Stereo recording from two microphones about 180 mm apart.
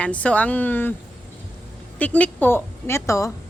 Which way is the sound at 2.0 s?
10° left (ahead or behind).